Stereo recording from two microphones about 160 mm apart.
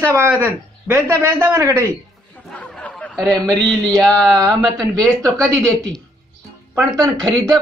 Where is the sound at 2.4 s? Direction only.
5° left (ahead or behind).